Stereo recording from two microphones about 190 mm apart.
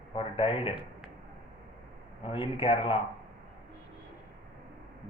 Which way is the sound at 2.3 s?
30° left (ahead or behind).